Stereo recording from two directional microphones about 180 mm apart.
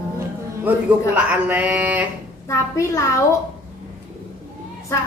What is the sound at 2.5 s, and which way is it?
Speech, 15° left (ahead or behind).